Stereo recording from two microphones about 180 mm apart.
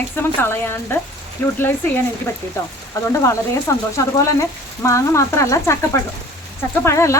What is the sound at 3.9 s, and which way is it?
Speech, 15° left (ahead or behind).